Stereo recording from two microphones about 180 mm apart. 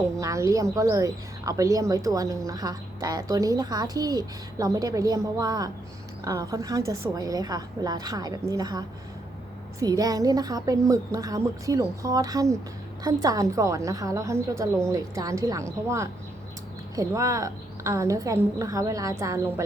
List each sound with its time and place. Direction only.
0.2 s speech: 15° right (ahead or behind)
9.8 s a woman's voice: 20° right (ahead or behind)